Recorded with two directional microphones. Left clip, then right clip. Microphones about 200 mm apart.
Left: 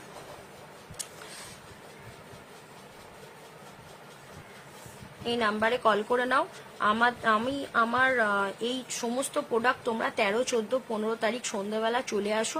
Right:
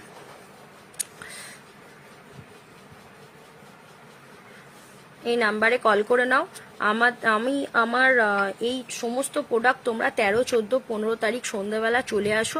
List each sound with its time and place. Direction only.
5.2 s a woman's voice: 15° right (ahead or behind)